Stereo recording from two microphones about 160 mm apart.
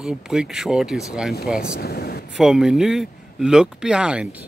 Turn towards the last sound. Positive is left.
turn(degrees=-5)  # may be behind; listen again after turning